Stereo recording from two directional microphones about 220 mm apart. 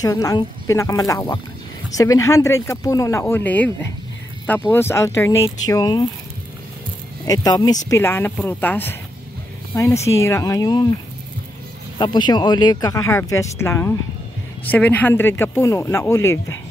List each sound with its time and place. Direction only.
0.0 s speech: 15° left (ahead or behind)
7.2 s speech: 15° left (ahead or behind)
12.0 s speech: 20° left (ahead or behind)